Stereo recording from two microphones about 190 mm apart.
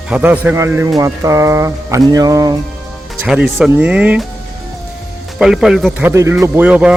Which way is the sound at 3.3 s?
5° right (ahead or behind).